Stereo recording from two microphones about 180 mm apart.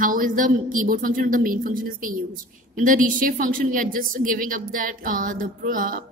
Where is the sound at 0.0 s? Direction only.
50° right (ahead or behind).